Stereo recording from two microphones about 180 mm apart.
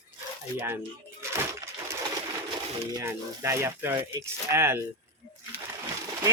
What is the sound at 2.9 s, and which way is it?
Speech, 15° right (ahead or behind).